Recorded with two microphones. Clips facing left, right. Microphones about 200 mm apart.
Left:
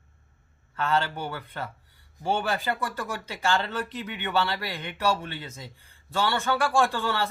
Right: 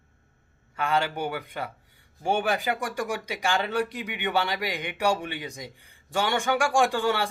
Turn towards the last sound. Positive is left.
turn(degrees=-15)  # may be behind; listen again after turning